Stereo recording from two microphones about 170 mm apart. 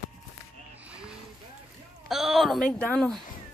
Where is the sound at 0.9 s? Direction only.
5° right (ahead or behind).